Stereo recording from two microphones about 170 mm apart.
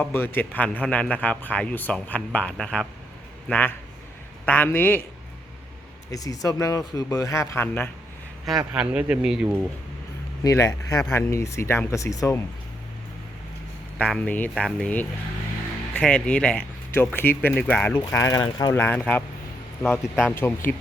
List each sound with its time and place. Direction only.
0.0 s speech: 10° left (ahead or behind)
6.1 s speech: 20° left (ahead or behind)
8.7 s speech: 5° right (ahead or behind)
10.4 s speech: 20° left (ahead or behind)
14.0 s speech: 10° left (ahead or behind)
17.9 s speech: 20° left (ahead or behind)
18.7 s speech: 10° left (ahead or behind)